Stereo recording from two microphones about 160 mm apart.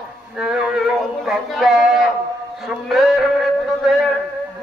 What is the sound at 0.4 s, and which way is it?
A man's voice, 5° right (ahead or behind).